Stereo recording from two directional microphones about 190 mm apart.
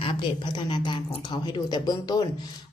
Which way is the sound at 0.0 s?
25° left (ahead or behind).